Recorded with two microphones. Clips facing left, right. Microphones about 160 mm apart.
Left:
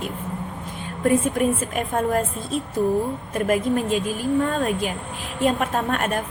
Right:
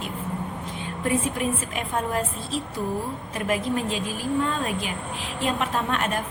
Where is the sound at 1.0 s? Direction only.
50° left (ahead or behind).